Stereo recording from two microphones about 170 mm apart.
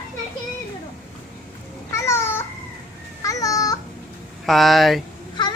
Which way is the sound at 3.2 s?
20° left (ahead or behind).